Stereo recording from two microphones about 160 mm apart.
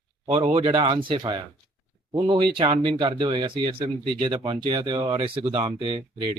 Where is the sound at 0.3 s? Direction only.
40° right (ahead or behind).